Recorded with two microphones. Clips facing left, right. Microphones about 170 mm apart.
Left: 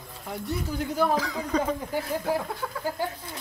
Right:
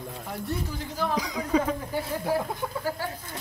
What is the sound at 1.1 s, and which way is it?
Speech, 15° right (ahead or behind).